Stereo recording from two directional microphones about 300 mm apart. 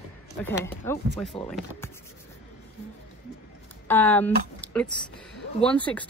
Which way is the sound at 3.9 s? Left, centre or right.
Centre.